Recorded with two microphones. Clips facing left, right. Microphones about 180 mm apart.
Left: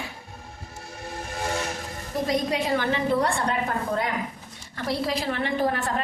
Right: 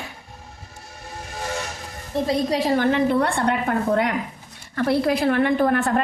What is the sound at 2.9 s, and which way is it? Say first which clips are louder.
A woman's voice: right 4 dB; 60° right (ahead or behind).